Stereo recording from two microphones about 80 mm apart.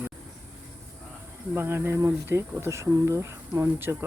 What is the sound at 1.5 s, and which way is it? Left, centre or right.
Speech, right.